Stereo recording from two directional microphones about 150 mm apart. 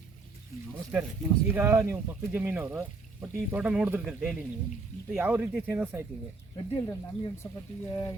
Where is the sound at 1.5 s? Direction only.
15° right (ahead or behind).